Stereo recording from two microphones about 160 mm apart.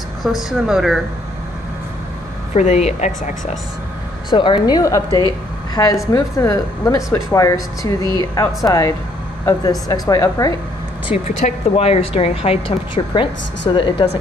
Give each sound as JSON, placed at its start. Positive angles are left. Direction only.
{"t": 0.2, "sound": "speech", "side_deg": 0}
{"t": 2.5, "sound": "a woman's voice", "side_deg": 45}
{"t": 4.3, "sound": "a woman's voice", "side_deg": 30}
{"t": 11.2, "sound": "a woman's voice", "side_deg": 45}